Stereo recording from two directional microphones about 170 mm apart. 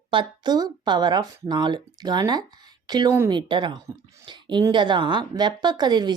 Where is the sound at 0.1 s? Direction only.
25° right (ahead or behind).